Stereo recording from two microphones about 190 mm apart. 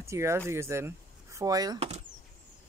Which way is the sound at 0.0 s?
15° right (ahead or behind).